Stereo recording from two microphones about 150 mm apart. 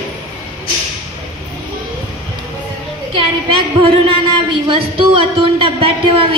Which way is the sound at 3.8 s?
35° right (ahead or behind).